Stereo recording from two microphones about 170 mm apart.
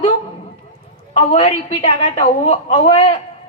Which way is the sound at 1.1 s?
40° left (ahead or behind).